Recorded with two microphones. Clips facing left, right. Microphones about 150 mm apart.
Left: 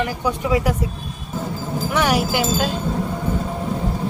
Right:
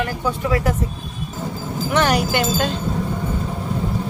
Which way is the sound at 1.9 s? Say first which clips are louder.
Right 1 dB; 5° left (ahead or behind).